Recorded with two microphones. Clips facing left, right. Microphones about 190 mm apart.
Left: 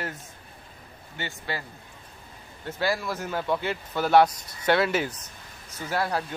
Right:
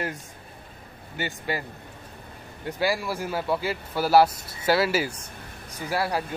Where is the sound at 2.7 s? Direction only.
10° right (ahead or behind).